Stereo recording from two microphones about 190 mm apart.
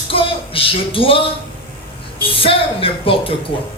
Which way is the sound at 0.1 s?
30° left (ahead or behind).